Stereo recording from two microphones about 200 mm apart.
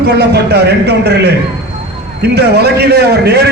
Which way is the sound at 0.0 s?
55° right (ahead or behind).